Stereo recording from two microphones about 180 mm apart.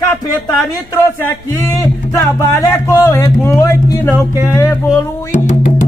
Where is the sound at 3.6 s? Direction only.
15° left (ahead or behind).